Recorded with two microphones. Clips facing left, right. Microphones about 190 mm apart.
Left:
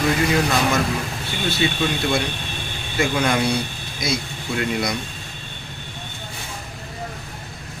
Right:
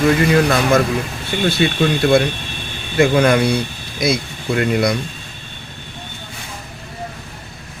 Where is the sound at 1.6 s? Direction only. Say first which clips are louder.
Right 5 dB; 55° right (ahead or behind).